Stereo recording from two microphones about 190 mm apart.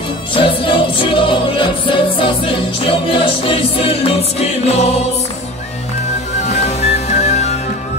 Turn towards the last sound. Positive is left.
turn(degrees=35)  # may be behind; listen again after turning